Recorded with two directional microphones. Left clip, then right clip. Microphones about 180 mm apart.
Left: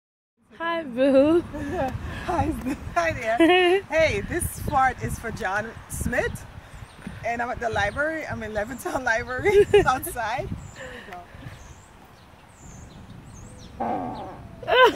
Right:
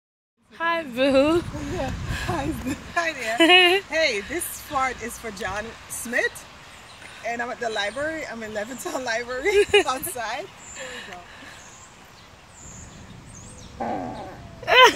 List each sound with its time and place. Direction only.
0.6 s speech: 15° left (ahead or behind)
3.9 s speech: 5° left (ahead or behind)
7.2 s speech: centre (ahead or behind)
9.6 s speech: 20° left (ahead or behind)
10.1 s speech: 5° left (ahead or behind)
10.8 s vehicle: 20° left (ahead or behind)
13.7 s a sound: centre (ahead or behind)